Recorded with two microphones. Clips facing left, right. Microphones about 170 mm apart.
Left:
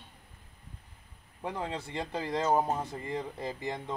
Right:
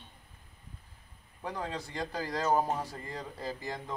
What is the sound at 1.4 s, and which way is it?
Speech, 20° left (ahead or behind).